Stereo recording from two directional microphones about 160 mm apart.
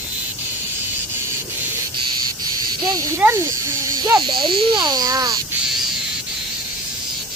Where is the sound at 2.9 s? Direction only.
20° right (ahead or behind).